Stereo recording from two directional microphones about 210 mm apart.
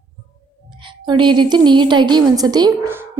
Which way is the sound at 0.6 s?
25° right (ahead or behind).